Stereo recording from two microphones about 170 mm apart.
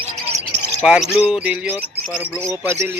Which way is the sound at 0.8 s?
5° right (ahead or behind).